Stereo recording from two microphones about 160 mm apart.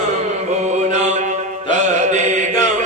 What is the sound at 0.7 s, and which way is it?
Mantra, 45° right (ahead or behind).